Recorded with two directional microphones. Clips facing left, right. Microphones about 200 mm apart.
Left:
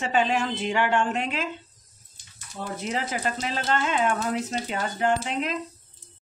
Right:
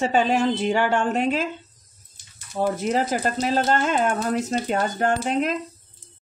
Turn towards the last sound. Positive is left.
turn(degrees=-45)  # may be behind; listen again after turning